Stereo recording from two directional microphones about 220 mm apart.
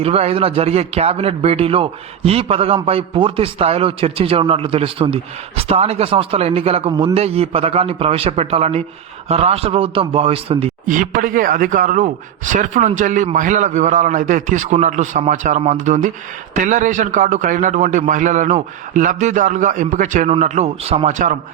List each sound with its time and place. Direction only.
0.0 s a man's voice: 25° right (ahead or behind)
10.8 s a man's voice: 35° right (ahead or behind)